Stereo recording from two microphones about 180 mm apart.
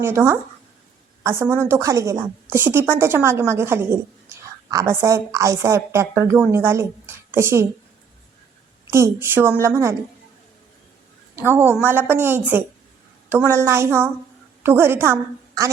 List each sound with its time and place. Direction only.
0.0 s a woman's voice: 15° right (ahead or behind)
8.9 s a woman's voice: 15° right (ahead or behind)
11.3 s a woman's voice: 10° right (ahead or behind)